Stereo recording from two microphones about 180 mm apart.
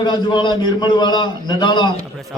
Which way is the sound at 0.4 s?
25° left (ahead or behind).